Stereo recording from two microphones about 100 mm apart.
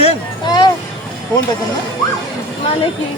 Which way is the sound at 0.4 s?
45° left (ahead or behind).